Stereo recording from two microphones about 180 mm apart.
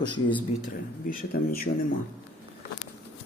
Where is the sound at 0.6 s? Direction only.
50° left (ahead or behind).